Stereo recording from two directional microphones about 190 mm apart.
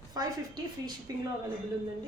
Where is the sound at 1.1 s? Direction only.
15° right (ahead or behind).